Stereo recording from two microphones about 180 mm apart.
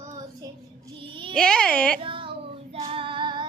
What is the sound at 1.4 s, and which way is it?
Speech, 5° left (ahead or behind).